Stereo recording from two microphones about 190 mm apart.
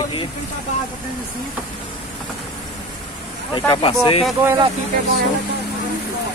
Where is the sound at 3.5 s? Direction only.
25° left (ahead or behind).